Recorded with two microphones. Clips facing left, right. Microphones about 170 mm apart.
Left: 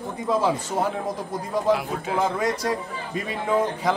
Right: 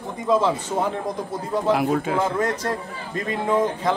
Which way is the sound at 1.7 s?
55° right (ahead or behind).